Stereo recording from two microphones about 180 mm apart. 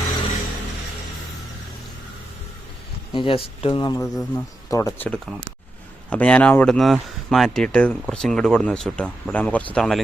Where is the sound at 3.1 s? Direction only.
30° left (ahead or behind).